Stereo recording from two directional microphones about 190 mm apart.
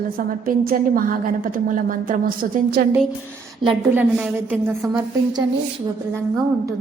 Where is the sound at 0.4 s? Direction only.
50° right (ahead or behind).